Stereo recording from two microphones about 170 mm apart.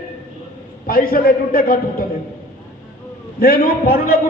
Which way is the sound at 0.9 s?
55° left (ahead or behind).